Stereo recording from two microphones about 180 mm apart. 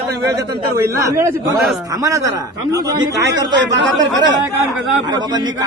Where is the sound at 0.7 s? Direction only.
15° right (ahead or behind).